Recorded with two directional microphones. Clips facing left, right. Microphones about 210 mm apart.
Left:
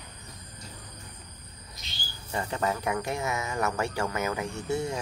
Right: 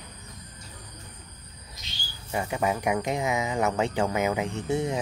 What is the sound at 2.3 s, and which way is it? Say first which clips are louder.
Speech: right 3 dB; 10° right (ahead or behind).